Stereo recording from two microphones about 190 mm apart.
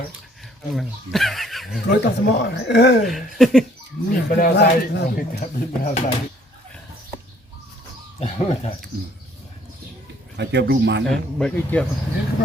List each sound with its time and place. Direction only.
0.7 s speech: centre (ahead or behind)
1.9 s speech: 60° left (ahead or behind)
3.1 s speech: centre (ahead or behind)
4.1 s speech: 50° left (ahead or behind)
4.5 s speech: 60° left (ahead or behind)
5.4 s speech: 40° left (ahead or behind)
8.2 s speech: 35° left (ahead or behind)
10.3 s speech: 65° right (ahead or behind)
11.0 s speech: 5° left (ahead or behind)